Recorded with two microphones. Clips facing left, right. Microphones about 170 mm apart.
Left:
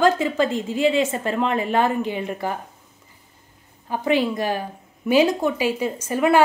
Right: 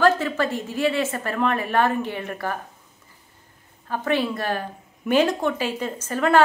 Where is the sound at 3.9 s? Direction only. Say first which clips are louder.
Left 3 dB; 15° left (ahead or behind).